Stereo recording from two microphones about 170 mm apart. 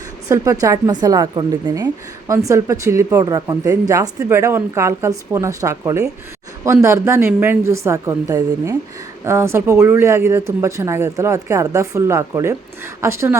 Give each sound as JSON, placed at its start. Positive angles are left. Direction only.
{"t": 0.3, "sound": "speech", "side_deg": -20}